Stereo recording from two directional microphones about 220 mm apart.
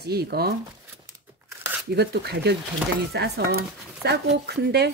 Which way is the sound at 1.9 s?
50° right (ahead or behind).